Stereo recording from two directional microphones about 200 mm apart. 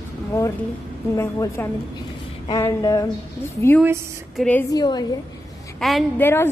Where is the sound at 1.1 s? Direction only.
15° left (ahead or behind).